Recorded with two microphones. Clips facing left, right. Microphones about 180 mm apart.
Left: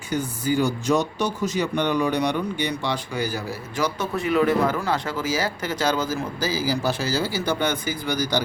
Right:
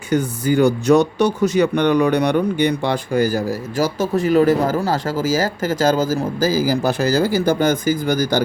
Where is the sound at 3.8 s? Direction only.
90° right.